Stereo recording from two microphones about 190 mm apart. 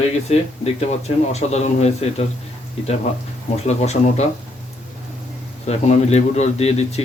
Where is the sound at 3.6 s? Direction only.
35° left (ahead or behind).